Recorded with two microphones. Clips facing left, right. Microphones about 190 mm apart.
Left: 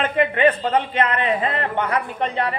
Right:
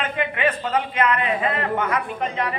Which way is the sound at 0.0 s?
35° left (ahead or behind).